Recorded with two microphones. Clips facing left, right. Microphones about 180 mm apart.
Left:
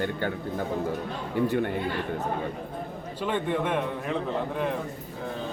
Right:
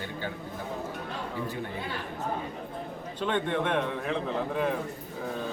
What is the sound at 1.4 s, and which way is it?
Speech, 65° left (ahead or behind).